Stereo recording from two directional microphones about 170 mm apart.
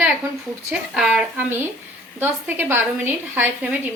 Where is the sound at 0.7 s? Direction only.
5° right (ahead or behind).